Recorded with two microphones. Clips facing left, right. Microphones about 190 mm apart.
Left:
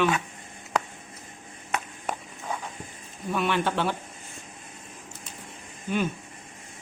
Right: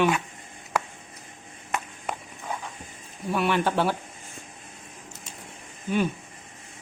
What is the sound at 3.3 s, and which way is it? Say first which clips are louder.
Speech: right 2 dB; 10° right (ahead or behind).